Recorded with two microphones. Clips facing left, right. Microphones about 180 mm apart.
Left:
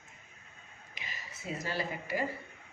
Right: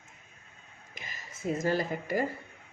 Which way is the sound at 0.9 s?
45° right (ahead or behind).